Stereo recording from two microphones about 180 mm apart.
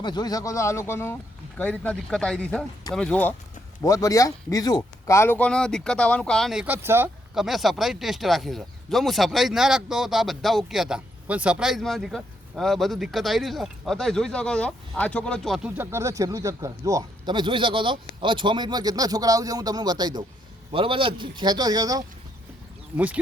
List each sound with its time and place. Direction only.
0.0 s speech: 25° left (ahead or behind); by 3.3 s 5° left (ahead or behind)
3.8 s speech: 20° left (ahead or behind); by 7.1 s 10° right (ahead or behind)
7.3 s speech: centre (ahead or behind)
15.8 s speech: 15° right (ahead or behind)